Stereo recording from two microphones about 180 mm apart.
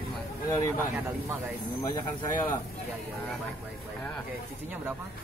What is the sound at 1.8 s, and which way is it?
Speech, 20° left (ahead or behind).